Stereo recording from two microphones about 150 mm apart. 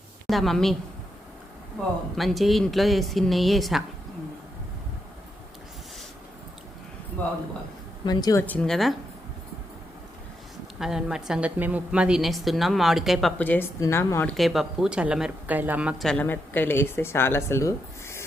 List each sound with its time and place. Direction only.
0.3 s a woman's voice: centre (ahead or behind)
2.1 s a woman's voice: centre (ahead or behind)
7.2 s speech: 10° left (ahead or behind)
8.0 s a woman's voice: 25° left (ahead or behind)
8.4 s a woman's voice: 5° left (ahead or behind)
10.8 s a woman's voice: 5° right (ahead or behind)
13.4 s speech: 10° left (ahead or behind)
14.3 s speech: centre (ahead or behind)
16.0 s speech: 10° left (ahead or behind)